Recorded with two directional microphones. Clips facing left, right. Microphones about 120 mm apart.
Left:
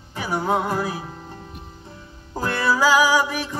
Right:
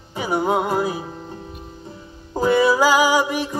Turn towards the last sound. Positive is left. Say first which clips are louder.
# right 2 dB
turn(degrees=-20)  # may be behind; listen again after turning